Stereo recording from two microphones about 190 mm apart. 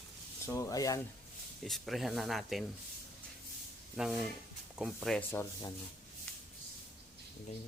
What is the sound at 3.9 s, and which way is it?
Speech, 5° right (ahead or behind).